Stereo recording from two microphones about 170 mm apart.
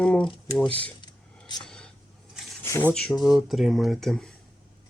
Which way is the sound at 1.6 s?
5° left (ahead or behind).